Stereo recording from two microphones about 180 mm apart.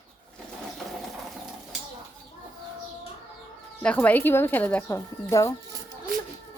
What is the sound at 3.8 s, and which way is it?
Speech, 10° left (ahead or behind).